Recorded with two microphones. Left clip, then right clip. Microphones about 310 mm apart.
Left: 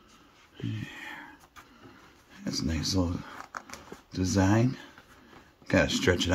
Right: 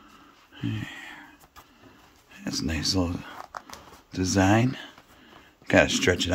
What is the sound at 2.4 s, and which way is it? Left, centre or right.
Speech, centre.